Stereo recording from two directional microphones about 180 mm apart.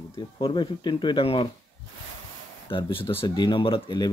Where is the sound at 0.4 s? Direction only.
25° left (ahead or behind).